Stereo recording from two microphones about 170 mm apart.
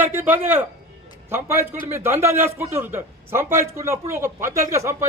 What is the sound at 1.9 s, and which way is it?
A man's voice, 15° right (ahead or behind).